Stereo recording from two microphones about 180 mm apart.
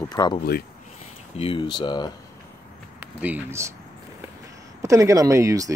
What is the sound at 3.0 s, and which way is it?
Speech, 10° right (ahead or behind).